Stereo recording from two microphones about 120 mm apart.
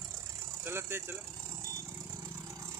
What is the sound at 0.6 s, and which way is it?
Vehicle, 20° right (ahead or behind).